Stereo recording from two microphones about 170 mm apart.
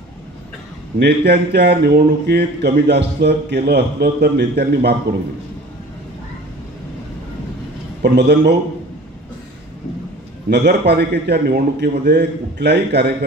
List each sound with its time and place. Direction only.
0.9 s speech: 75° right (ahead or behind)
8.0 s a man's voice: 85° right
10.5 s speech: 75° right (ahead or behind)